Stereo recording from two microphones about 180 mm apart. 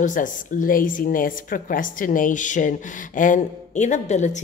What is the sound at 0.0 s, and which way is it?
A woman's voice, 45° left (ahead or behind).